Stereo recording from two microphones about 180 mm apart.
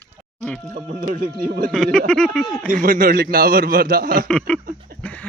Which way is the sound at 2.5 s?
50° right (ahead or behind).